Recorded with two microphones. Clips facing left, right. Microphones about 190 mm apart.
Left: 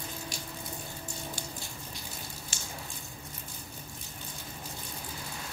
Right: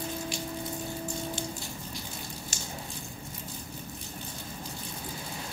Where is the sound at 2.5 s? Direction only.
40° right (ahead or behind).